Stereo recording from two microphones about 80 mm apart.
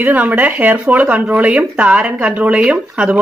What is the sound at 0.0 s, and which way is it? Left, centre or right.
Speech, right.